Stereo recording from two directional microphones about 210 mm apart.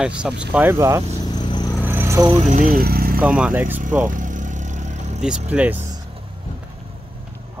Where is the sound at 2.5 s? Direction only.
40° right (ahead or behind).